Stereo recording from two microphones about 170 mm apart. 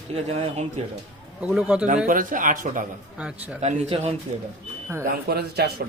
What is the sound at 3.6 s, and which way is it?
Speech, 40° right (ahead or behind).